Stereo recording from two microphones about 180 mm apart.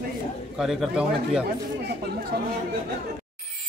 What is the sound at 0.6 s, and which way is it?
Speech, centre (ahead or behind).